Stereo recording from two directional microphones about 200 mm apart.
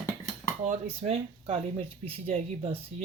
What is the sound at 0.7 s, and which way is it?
Speech, 30° right (ahead or behind).